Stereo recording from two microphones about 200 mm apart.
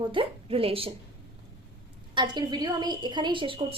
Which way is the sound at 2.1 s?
25° right (ahead or behind).